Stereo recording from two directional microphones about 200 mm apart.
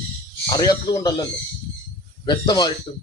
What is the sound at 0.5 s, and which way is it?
Speech, 20° left (ahead or behind).